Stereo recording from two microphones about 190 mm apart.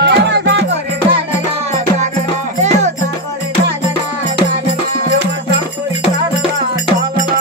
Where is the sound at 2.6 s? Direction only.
35° right (ahead or behind).